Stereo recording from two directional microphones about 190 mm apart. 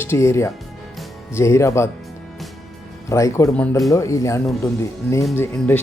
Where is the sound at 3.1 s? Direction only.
15° left (ahead or behind).